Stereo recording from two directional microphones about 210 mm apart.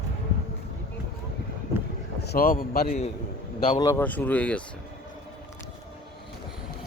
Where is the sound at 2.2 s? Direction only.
45° left (ahead or behind).